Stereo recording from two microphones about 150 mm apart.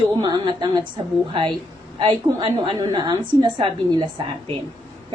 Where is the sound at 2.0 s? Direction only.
30° right (ahead or behind).